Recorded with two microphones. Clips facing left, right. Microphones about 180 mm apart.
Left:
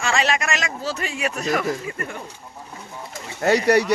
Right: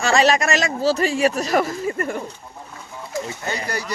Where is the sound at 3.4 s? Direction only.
75° left (ahead or behind).